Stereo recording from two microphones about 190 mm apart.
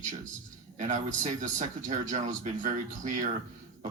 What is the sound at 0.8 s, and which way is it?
Speech, 40° right (ahead or behind).